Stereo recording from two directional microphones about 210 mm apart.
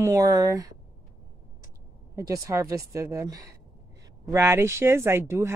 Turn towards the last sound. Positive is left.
turn(degrees=-10)  # may be behind; listen again after turning